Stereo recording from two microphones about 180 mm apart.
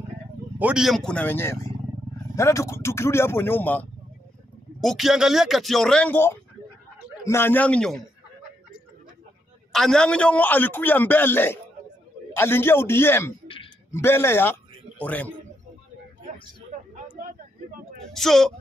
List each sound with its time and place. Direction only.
0.6 s a man's voice: 5° right (ahead or behind)
9.7 s a man's voice: 5° left (ahead or behind)
16.9 s a sound: 50° right (ahead or behind)
18.1 s speech: centre (ahead or behind)